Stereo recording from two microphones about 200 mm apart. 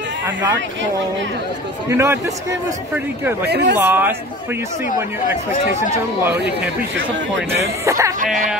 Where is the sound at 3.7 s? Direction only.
10° right (ahead or behind).